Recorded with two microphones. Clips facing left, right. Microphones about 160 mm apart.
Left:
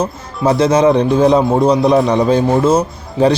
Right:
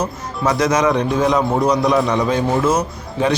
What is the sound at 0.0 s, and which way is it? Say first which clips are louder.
A man's voice: left 4 dB; 30° left (ahead or behind).